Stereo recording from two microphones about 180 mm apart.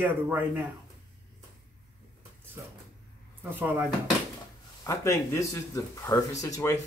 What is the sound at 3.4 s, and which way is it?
Speech, 10° right (ahead or behind).